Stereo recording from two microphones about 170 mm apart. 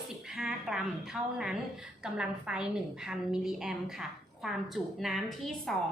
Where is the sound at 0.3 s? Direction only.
5° right (ahead or behind).